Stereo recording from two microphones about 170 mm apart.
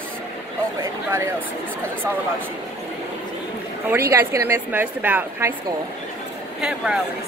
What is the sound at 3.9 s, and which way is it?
A woman's voice, 15° right (ahead or behind).